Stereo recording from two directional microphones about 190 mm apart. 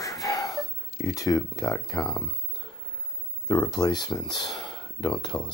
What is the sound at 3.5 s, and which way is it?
Speech, 20° left (ahead or behind).